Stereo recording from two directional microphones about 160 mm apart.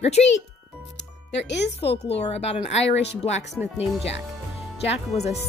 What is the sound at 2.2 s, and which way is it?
Speech, 40° left (ahead or behind).